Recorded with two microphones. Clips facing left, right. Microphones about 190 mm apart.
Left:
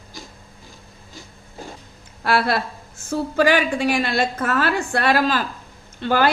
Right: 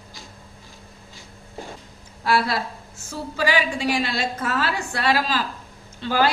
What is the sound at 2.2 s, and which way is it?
A woman's voice, 60° left (ahead or behind).